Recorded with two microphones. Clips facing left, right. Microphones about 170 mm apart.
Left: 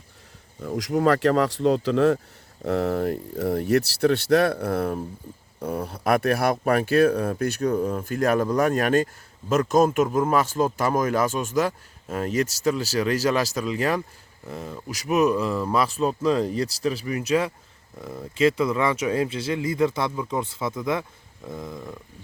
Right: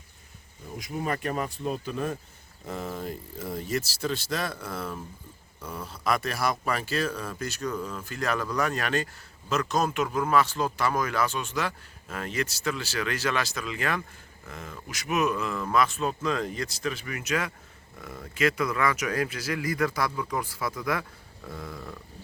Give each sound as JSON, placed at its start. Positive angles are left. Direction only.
{"t": 0.6, "sound": "speech", "side_deg": 90}
{"t": 2.6, "sound": "a man's voice", "side_deg": 70}